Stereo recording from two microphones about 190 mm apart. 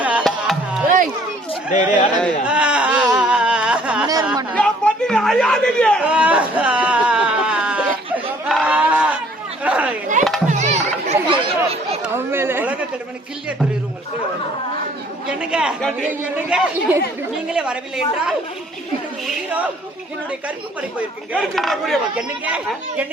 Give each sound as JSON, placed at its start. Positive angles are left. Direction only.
{"t": 0.0, "sound": "music", "side_deg": -5}
{"t": 2.2, "sound": "speech", "side_deg": -5}
{"t": 3.2, "sound": "a sound", "side_deg": -5}
{"t": 4.0, "sound": "a sound", "side_deg": -20}
{"t": 4.5, "sound": "a man's voice", "side_deg": 5}
{"t": 6.1, "sound": "a sound", "side_deg": -5}
{"t": 10.2, "sound": "music", "side_deg": -40}
{"t": 10.5, "sound": "chatter", "side_deg": -40}
{"t": 12.0, "sound": "a sound", "side_deg": -10}
{"t": 15.3, "sound": "speech", "side_deg": -5}
{"t": 16.0, "sound": "speech", "side_deg": -5}
{"t": 21.3, "sound": "speech", "side_deg": 0}